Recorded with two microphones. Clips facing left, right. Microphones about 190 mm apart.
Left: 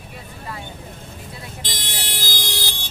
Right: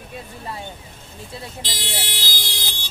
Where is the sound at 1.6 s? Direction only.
50° left (ahead or behind).